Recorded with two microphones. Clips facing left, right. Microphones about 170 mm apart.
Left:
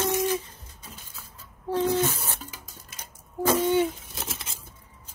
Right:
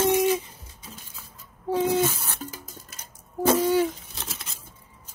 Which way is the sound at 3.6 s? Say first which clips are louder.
Right 1 dB; centre (ahead or behind).